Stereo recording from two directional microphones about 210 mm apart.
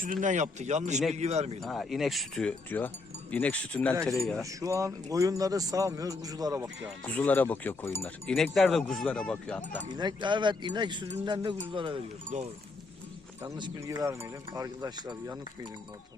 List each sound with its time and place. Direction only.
0.0 s speech: 40° right (ahead or behind)
1.6 s speech: centre (ahead or behind)
4.6 s a man's voice: 15° right (ahead or behind)
7.1 s speech: 10° left (ahead or behind)
9.9 s speech: 20° right (ahead or behind)
13.4 s a man's voice: 15° right (ahead or behind)